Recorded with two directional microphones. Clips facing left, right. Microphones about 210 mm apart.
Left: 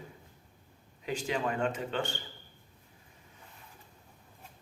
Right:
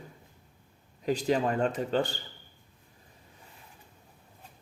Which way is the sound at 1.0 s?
40° right (ahead or behind).